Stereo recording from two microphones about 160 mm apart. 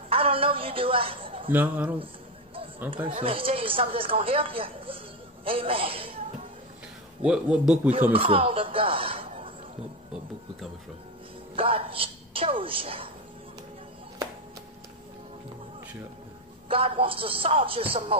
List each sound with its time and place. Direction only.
0.1 s a sound: 35° right (ahead or behind)
1.5 s a man's voice: 10° right (ahead or behind)
3.2 s speech: 35° right (ahead or behind)
7.2 s a man's voice: 5° right (ahead or behind)
8.1 s speech: 35° right (ahead or behind)
11.5 s speech: 35° right (ahead or behind)
16.6 s speech: 35° right (ahead or behind)